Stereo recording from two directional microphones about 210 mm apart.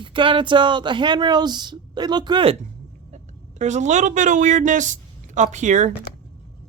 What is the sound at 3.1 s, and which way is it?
Speech, 35° right (ahead or behind).